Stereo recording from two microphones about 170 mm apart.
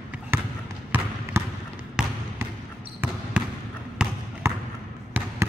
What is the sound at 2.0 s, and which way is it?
Trickle, 5° right (ahead or behind).